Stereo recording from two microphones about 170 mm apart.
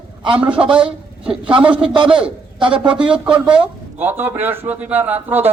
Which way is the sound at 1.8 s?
30° right (ahead or behind).